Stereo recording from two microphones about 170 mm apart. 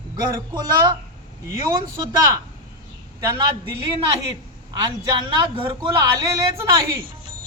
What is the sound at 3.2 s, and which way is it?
Speech, 25° right (ahead or behind).